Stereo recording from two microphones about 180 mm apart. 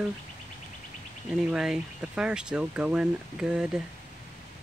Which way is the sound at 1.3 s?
5° right (ahead or behind).